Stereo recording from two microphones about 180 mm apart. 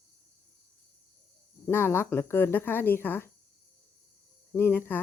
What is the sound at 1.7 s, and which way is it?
Speech, 15° left (ahead or behind).